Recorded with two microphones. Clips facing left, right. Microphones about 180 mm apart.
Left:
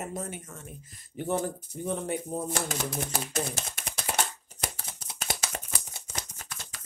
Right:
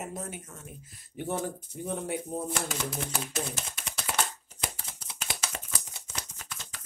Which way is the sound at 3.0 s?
45° left (ahead or behind).